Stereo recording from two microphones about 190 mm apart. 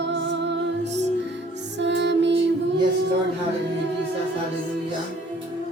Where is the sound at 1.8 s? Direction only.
65° right (ahead or behind).